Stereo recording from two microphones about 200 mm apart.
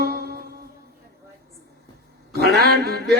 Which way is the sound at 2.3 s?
50° right (ahead or behind).